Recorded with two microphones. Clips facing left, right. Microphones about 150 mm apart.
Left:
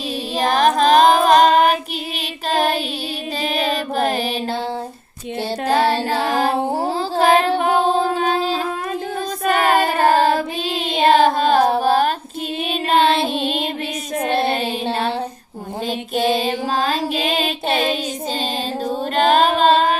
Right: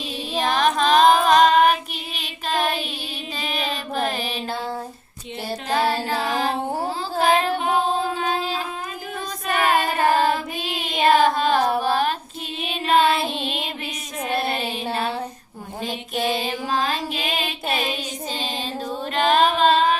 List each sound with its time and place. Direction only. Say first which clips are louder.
0.3 s child singing: left 4 dB; 40° left (ahead or behind)
3.7 s mantra: left 4 dB; 40° left (ahead or behind)
5.9 s music: left 4 dB; 30° left (ahead or behind)
6.1 s mantra: left 5 dB; 65° left (ahead or behind)
6.7 s music: left 5 dB; 35° left (ahead or behind)
8.1 s a sound: left 5 dB; 35° left (ahead or behind)
9.4 s child singing: left 4 dB; 55° left (ahead or behind)
10.3 s child singing: left 6 dB; 30° left (ahead or behind)
12.6 s music: left 2 dB; 65° left (ahead or behind)
14.3 s child singing: left 4 dB; 25° left (ahead or behind)
16.1 s music: left 6 dB; 30° left (ahead or behind)
18.9 s music: left 4 dB; 40° left (ahead or behind)